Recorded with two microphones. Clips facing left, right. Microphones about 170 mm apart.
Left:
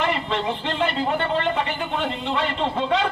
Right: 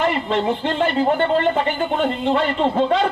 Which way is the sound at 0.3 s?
45° right (ahead or behind).